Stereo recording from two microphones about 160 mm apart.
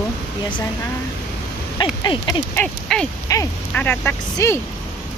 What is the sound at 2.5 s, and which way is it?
Speech, 10° left (ahead or behind).